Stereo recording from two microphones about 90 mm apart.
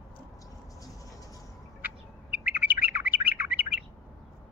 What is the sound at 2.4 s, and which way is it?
Bird, 20° right (ahead or behind).